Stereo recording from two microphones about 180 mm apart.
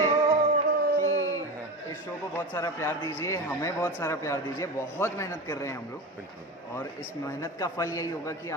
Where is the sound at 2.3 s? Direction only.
15° left (ahead or behind).